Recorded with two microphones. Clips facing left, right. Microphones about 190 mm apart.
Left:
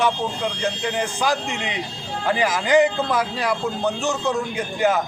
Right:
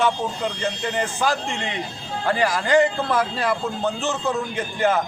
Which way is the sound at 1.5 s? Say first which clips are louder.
Even; 15° left (ahead or behind).